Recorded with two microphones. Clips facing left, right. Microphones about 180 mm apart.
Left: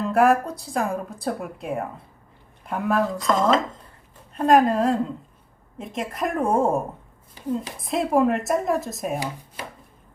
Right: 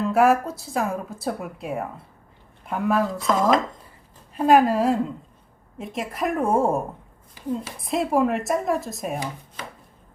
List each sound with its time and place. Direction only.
0.0 s speech: centre (ahead or behind)